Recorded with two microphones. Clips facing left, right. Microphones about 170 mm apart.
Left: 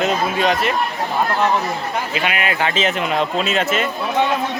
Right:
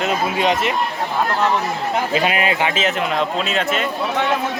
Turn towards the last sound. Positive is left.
turn(degrees=0)  # may be behind; listen again after turning